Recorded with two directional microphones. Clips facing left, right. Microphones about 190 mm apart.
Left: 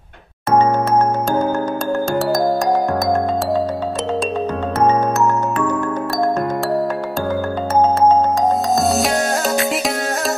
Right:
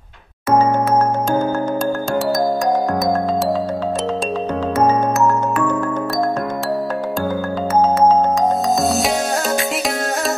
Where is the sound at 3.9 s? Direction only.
Centre (ahead or behind).